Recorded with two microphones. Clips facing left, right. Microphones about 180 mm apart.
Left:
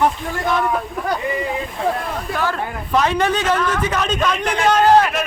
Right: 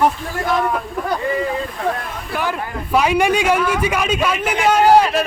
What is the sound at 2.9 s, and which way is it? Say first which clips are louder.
A man's voice: right 2 dB; 10° right (ahead or behind).